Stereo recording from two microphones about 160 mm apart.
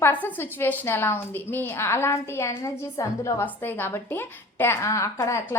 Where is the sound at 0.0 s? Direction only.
10° left (ahead or behind).